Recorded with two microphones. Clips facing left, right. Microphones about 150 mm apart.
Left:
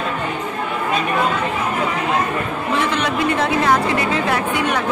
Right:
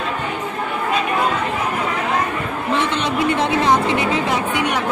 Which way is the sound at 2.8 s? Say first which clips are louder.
Left 1 dB; 25° right (ahead or behind).